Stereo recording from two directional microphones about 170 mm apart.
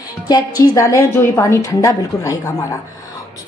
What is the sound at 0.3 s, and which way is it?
A woman's voice, 20° left (ahead or behind).